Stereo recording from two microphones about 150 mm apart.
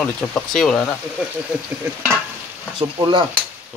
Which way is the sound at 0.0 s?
5° left (ahead or behind).